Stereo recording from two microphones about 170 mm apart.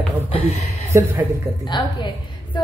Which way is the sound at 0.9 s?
10° right (ahead or behind).